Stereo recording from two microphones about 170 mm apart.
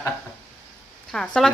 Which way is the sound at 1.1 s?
5° left (ahead or behind).